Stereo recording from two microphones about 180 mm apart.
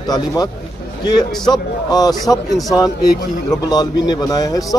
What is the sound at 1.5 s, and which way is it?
Speech, 20° left (ahead or behind).